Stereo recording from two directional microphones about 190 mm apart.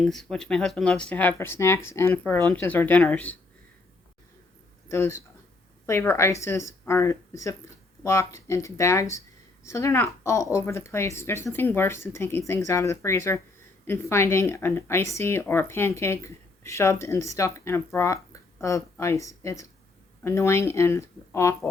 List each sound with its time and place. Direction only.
0.0 s a woman's voice: centre (ahead or behind)
4.9 s a woman's voice: 15° left (ahead or behind)